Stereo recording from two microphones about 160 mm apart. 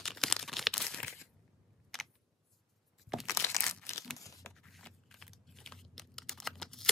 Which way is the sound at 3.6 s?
5° left (ahead or behind).